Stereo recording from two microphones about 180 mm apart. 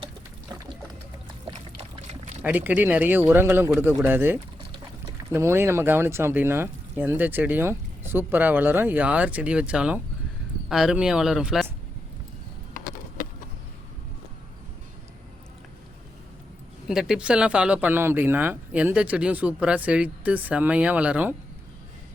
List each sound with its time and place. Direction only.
2.4 s speech: 10° right (ahead or behind)
12.7 s a sound: 50° left (ahead or behind)
16.9 s speech: 5° right (ahead or behind)